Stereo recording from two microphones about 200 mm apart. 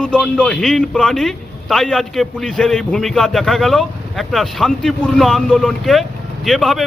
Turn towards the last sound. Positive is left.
turn(degrees=0)  # may be behind; listen again after turning